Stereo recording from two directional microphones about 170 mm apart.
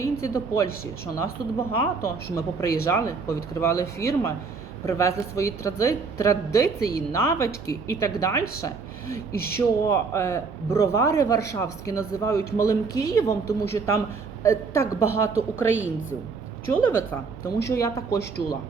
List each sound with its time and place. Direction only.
0.0 s speech: 15° left (ahead or behind)
2.3 s speech: 20° left (ahead or behind)
9.3 s speech: 65° left (ahead or behind)
9.6 s speech: 15° left (ahead or behind)